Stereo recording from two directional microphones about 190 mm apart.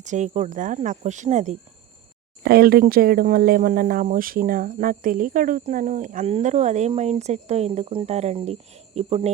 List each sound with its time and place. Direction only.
0.0 s speech: 40° right (ahead or behind)
2.4 s speech: 55° right (ahead or behind); by 9.3 s 35° right (ahead or behind)